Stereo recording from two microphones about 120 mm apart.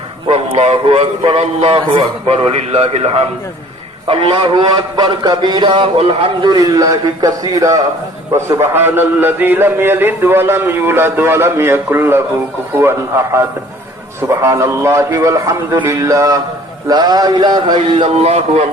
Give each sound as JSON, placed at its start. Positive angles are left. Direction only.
{"t": 0.3, "sound": "a man's voice", "side_deg": -55}
{"t": 18.1, "sound": "speech", "side_deg": -60}